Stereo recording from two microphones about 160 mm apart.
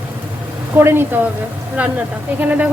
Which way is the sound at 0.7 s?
15° right (ahead or behind).